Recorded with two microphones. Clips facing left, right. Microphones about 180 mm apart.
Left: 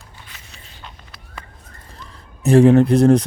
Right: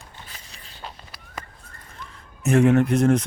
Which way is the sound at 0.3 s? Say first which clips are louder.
Left 1 dB; 35° right (ahead or behind).